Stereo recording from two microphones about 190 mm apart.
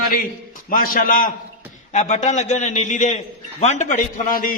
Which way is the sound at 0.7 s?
45° left (ahead or behind).